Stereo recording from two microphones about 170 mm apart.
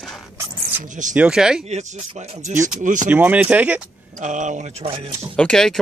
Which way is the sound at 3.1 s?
10° right (ahead or behind).